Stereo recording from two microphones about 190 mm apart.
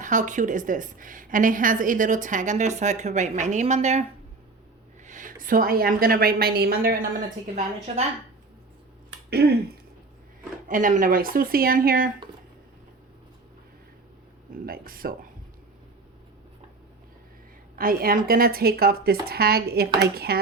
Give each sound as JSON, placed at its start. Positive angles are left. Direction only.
{"t": 0.0, "sound": "a woman's voice", "side_deg": -40}
{"t": 5.0, "sound": "speech", "side_deg": -40}
{"t": 7.4, "sound": "a woman's voice", "side_deg": -35}
{"t": 9.3, "sound": "speech", "side_deg": -55}
{"t": 10.7, "sound": "speech", "side_deg": -45}
{"t": 14.5, "sound": "speech", "side_deg": -50}
{"t": 17.7, "sound": "speech", "side_deg": -50}